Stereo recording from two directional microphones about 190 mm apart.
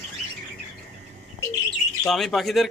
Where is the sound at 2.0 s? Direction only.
Centre (ahead or behind).